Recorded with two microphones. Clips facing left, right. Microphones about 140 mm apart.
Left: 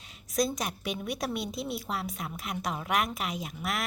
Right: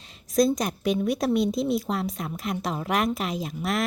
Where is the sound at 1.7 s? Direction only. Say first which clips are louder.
Right 7 dB; 40° right (ahead or behind).